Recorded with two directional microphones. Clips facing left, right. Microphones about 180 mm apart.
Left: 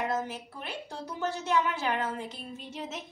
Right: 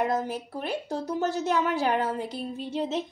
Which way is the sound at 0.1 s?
40° right (ahead or behind).